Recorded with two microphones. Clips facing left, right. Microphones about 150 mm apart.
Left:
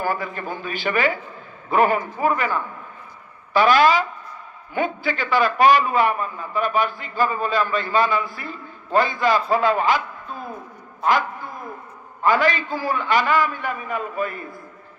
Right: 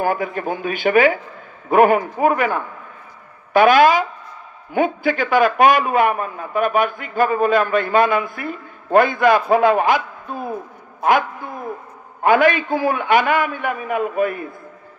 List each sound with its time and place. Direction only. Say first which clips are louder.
0.0 s a man's voice: right 5 dB; 50° right (ahead or behind)